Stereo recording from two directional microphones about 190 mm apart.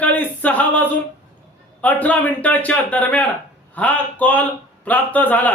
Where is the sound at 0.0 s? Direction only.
10° left (ahead or behind).